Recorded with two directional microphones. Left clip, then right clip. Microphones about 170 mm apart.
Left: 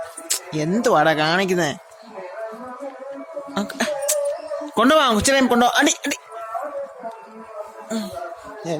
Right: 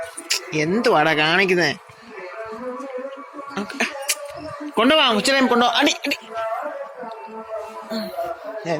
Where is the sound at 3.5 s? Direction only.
45° left (ahead or behind).